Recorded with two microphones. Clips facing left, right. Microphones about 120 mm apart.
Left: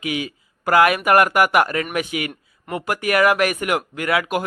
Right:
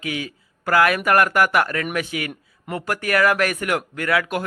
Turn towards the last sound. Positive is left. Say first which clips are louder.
# left 1 dB
turn(degrees=15)  # may be behind; listen again after turning